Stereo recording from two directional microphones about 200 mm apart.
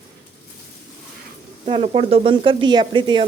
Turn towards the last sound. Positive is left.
turn(degrees=-20)  # may be behind; listen again after turning